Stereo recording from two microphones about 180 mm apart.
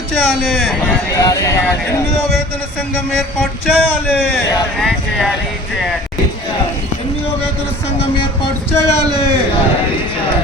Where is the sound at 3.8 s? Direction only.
10° left (ahead or behind).